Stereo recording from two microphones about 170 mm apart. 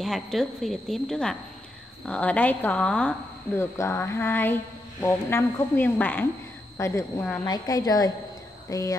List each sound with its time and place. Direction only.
0.0 s a woman's voice: centre (ahead or behind); by 8.9 s 20° left (ahead or behind)